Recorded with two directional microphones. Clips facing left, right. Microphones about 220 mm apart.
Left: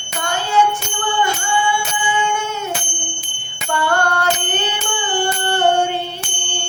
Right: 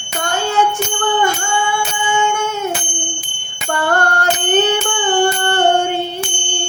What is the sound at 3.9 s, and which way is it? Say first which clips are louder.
Bicycle bell: right 1 dB; 45° right (ahead or behind).